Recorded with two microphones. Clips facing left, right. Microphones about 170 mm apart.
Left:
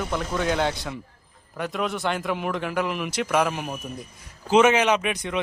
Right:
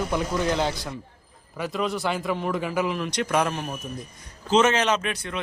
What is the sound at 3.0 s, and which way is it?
Speech, 5° left (ahead or behind).